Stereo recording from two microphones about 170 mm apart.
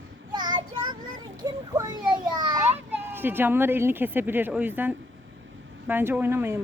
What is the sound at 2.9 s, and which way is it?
Speech, 10° right (ahead or behind).